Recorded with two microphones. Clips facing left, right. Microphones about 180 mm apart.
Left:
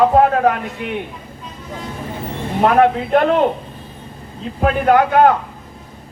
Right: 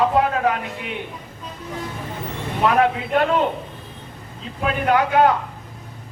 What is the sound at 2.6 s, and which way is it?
Speech, 50° left (ahead or behind).